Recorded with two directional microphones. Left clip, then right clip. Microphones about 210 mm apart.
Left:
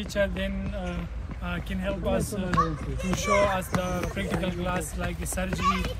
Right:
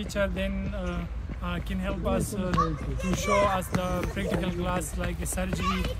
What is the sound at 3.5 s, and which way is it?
Speech, 25° right (ahead or behind).